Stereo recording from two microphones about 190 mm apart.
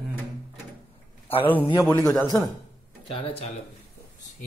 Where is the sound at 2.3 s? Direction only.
10° left (ahead or behind).